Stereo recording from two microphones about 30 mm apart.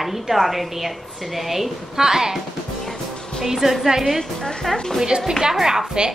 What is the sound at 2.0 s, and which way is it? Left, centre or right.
Speech, centre.